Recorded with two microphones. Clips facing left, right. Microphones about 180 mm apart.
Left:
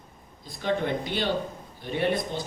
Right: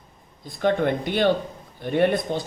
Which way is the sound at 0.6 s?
55° right (ahead or behind).